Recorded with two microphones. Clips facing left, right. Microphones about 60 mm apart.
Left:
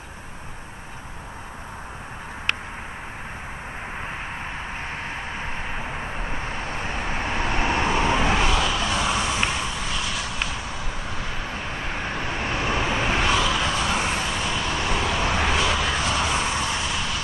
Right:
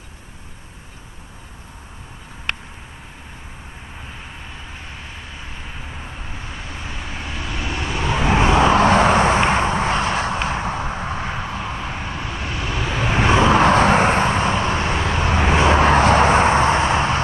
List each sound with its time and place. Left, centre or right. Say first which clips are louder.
6.4 s vehicle: left 4 dB; left
8.3 s vehicle: right 7 dB; right
8.7 s vehicle: right 10 dB; right
12.1 s vehicle: left 1 dB; left
13.0 s vehicle: right 9 dB; right